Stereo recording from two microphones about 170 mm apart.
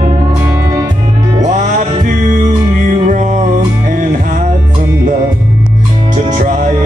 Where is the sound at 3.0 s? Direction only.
45° right (ahead or behind).